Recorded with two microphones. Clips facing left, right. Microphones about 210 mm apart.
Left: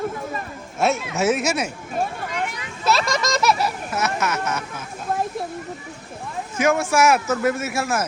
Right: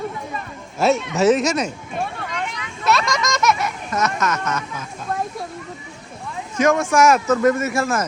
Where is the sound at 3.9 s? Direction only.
5° left (ahead or behind).